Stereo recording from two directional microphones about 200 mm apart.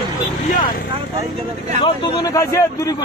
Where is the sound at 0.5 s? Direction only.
45° left (ahead or behind).